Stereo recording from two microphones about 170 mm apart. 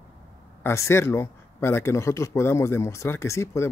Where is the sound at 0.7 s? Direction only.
15° left (ahead or behind).